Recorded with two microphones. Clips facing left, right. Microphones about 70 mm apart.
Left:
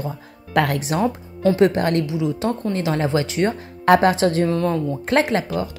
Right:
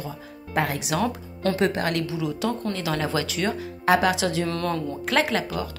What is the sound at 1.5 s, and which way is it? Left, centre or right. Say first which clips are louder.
Speech: left 6 dB; left.